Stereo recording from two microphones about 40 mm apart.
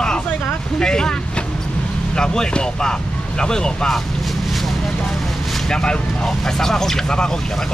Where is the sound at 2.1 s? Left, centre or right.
Centre.